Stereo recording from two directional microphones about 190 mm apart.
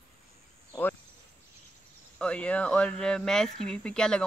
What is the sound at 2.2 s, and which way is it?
Speech, 5° left (ahead or behind).